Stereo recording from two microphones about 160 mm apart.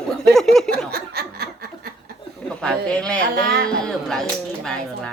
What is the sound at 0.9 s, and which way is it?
Laughter, 80° right.